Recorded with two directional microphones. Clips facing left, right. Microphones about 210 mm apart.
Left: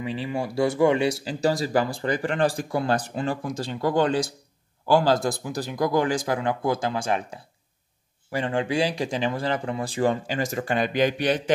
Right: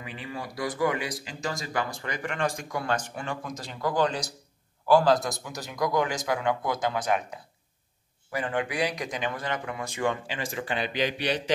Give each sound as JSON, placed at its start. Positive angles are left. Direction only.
{"t": 0.0, "sound": "speech", "side_deg": 30}